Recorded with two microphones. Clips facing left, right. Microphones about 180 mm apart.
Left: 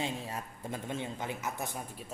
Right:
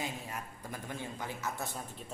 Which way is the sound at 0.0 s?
30° left (ahead or behind).